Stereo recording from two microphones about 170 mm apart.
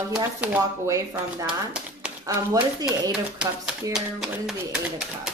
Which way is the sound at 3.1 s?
5° right (ahead or behind).